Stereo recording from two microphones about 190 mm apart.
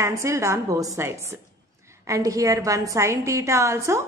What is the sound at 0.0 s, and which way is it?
A woman's voice, 15° right (ahead or behind).